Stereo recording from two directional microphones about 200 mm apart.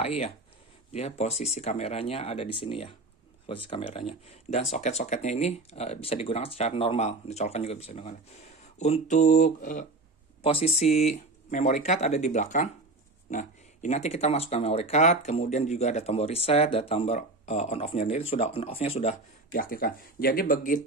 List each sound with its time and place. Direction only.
0.0 s speech: 30° left (ahead or behind)